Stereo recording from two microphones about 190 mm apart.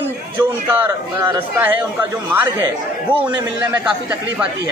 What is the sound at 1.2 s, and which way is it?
Speech, 10° right (ahead or behind).